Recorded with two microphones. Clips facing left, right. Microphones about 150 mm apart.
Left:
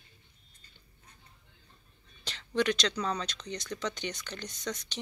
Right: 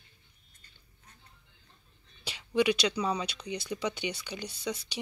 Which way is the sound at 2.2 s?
10° right (ahead or behind).